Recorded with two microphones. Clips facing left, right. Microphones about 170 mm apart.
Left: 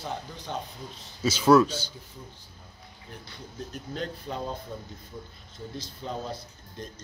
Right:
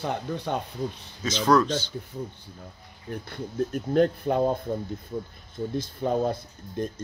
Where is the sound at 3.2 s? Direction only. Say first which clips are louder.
Right 12 dB; 55° right (ahead or behind).